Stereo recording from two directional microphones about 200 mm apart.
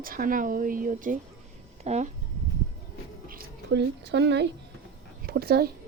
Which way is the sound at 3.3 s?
45° right (ahead or behind).